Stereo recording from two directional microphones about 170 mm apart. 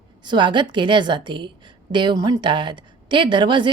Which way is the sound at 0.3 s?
30° right (ahead or behind).